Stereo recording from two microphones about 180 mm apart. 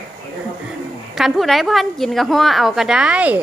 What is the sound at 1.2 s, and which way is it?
A woman's voice, centre (ahead or behind).